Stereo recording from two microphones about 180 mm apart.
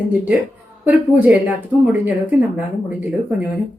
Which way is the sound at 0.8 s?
10° right (ahead or behind).